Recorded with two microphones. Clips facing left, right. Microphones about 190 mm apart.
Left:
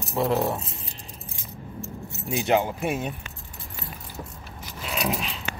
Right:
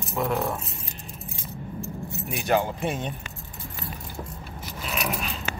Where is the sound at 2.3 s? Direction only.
20° left (ahead or behind).